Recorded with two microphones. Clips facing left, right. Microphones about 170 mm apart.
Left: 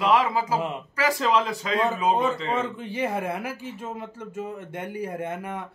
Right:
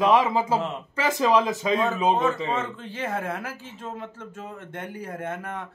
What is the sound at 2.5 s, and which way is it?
Speech, 10° left (ahead or behind).